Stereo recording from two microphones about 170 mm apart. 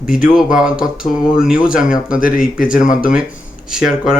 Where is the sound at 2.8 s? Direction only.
50° left (ahead or behind).